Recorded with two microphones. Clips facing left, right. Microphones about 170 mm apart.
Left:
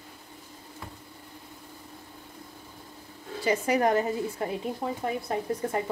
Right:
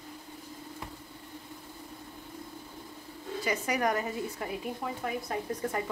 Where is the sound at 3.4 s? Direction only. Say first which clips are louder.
Left 6 dB; 30° left (ahead or behind).